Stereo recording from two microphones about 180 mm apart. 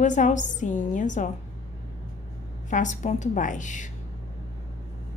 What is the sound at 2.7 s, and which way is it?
A woman's voice, 45° left (ahead or behind).